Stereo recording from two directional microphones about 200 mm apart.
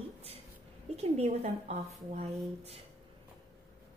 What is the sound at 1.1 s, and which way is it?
A woman's voice, 30° right (ahead or behind).